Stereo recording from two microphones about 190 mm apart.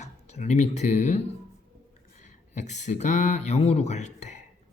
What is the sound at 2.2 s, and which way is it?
Speech, 40° left (ahead or behind).